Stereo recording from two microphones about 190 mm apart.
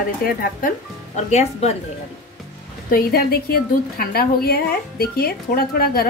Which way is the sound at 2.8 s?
50° left (ahead or behind).